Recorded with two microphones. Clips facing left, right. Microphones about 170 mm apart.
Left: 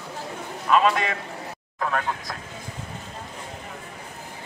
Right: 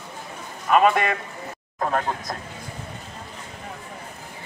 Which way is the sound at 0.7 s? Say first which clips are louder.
Right 2 dB; 55° right (ahead or behind).